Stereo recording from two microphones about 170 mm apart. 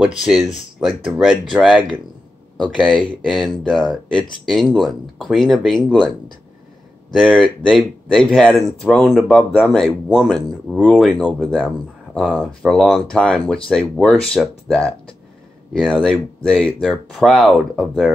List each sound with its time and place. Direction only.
0.0 s speech: 5° right (ahead or behind)
2.8 s speech: centre (ahead or behind)
7.2 s speech: 5° right (ahead or behind)